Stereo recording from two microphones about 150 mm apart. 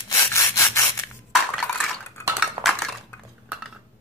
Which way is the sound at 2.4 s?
Centre (ahead or behind).